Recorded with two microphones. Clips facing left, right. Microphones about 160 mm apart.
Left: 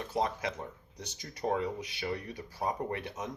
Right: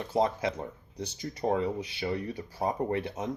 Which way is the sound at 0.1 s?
30° right (ahead or behind).